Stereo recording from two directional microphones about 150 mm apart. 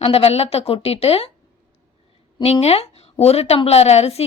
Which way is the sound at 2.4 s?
45° left (ahead or behind).